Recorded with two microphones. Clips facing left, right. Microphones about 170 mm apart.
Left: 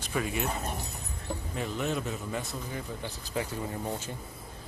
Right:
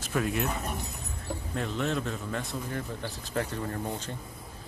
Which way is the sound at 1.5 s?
5° left (ahead or behind).